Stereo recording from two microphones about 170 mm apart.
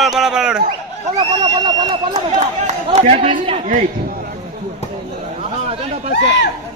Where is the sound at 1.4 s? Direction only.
25° right (ahead or behind).